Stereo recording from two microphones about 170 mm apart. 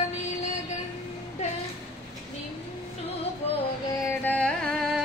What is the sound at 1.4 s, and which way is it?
Music, 40° left (ahead or behind).